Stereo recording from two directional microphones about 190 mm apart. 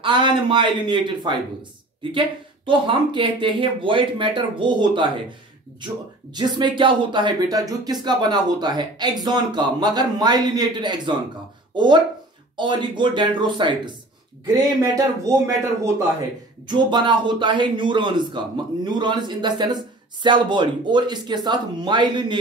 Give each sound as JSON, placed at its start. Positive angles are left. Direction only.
{"t": 0.0, "sound": "speech", "side_deg": -25}
{"t": 6.3, "sound": "a man's voice", "side_deg": -25}